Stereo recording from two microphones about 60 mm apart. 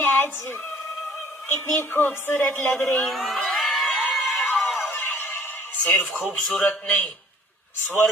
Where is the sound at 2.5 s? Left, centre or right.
Centre.